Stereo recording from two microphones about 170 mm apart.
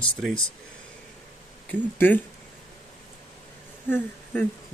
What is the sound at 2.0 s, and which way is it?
Speech, 10° left (ahead or behind).